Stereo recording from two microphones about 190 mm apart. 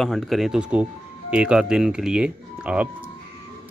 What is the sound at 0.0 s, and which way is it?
Speech, centre (ahead or behind).